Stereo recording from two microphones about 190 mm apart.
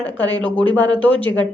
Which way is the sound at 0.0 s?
10° left (ahead or behind).